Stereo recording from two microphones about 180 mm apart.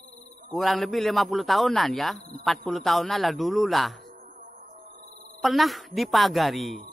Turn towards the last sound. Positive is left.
turn(degrees=0)  # may be behind; listen again after turning